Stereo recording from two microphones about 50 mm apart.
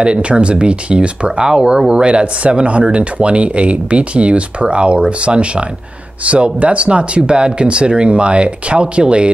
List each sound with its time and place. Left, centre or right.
0.0 s speech: right